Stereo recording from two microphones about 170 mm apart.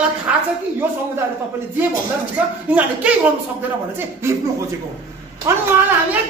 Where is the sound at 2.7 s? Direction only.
10° right (ahead or behind).